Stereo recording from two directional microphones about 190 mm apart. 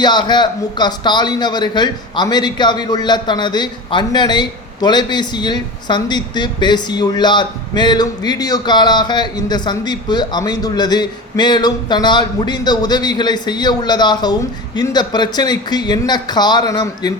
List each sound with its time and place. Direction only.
0.0 s a man's voice: 25° left (ahead or behind)